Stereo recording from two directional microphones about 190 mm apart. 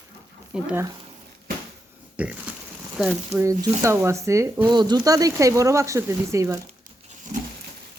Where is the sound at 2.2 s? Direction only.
5° right (ahead or behind).